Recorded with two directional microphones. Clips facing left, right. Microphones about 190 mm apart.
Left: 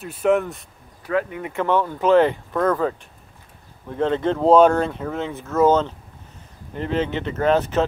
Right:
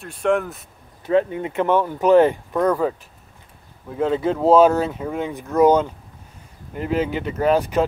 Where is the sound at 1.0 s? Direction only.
25° right (ahead or behind).